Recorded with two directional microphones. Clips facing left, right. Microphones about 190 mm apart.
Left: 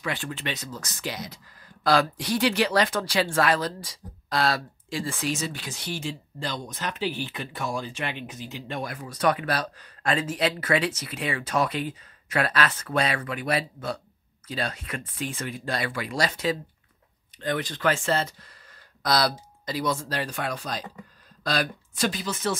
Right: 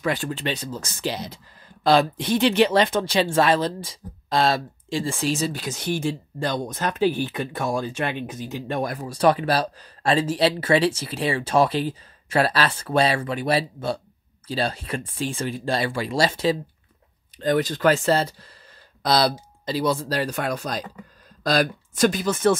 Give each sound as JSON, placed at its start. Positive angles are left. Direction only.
{"t": 0.0, "sound": "speech", "side_deg": -40}